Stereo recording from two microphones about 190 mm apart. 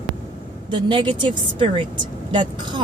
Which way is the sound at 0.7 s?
25° right (ahead or behind).